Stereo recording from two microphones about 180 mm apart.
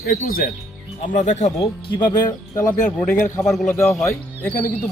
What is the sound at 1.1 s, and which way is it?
Speech, 40° left (ahead or behind).